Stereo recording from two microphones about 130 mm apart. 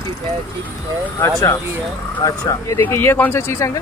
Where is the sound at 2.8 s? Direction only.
15° left (ahead or behind).